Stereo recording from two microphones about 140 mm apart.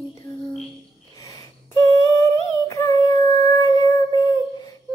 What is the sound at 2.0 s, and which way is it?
Humming, 20° left (ahead or behind).